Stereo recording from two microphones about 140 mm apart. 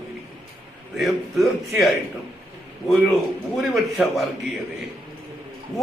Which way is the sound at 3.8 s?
Centre (ahead or behind).